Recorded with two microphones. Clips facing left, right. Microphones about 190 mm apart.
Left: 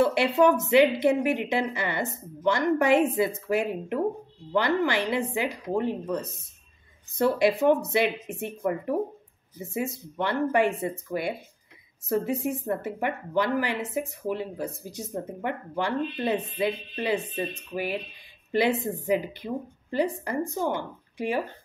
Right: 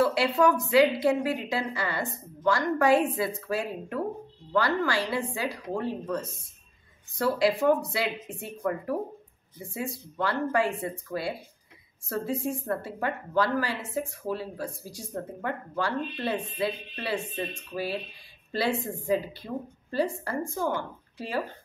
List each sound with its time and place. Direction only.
0.0 s speech: 25° left (ahead or behind)